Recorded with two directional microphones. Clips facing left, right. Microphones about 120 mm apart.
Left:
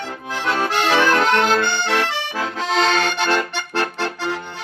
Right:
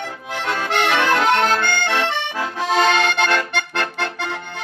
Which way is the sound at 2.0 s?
20° right (ahead or behind).